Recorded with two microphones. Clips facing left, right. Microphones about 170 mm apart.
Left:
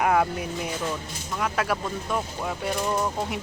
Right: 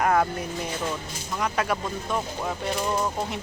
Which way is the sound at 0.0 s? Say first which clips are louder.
Even; 5° left (ahead or behind).